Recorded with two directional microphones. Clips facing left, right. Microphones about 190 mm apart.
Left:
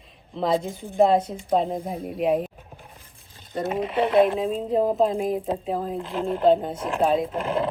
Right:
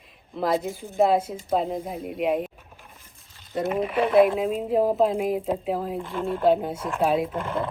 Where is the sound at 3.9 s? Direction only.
25° left (ahead or behind).